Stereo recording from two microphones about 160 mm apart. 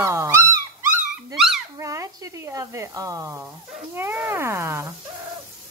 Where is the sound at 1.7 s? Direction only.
20° right (ahead or behind).